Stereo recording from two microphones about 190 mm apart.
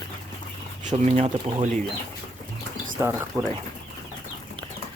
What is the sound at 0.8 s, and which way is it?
Speech, 40° right (ahead or behind).